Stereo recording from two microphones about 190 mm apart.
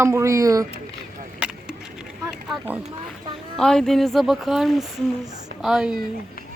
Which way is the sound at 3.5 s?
5° left (ahead or behind).